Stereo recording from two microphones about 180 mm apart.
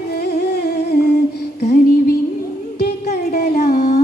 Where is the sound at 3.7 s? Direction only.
45° left (ahead or behind).